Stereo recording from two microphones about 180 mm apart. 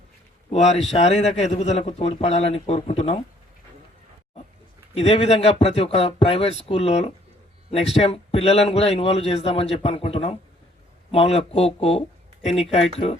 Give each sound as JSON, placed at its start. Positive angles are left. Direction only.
{"t": 0.5, "sound": "a man's voice", "side_deg": 40}
{"t": 4.9, "sound": "a man's voice", "side_deg": 35}